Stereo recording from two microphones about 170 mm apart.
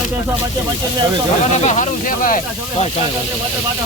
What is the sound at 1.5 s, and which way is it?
Speech, 45° left (ahead or behind).